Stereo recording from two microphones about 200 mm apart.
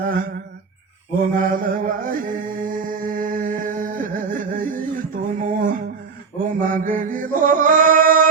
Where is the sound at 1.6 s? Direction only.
45° right (ahead or behind).